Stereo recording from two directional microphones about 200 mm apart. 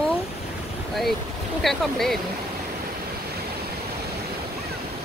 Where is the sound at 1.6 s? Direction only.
Centre (ahead or behind).